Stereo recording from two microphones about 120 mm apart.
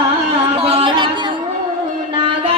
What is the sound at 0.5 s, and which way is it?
Music, 50° right (ahead or behind).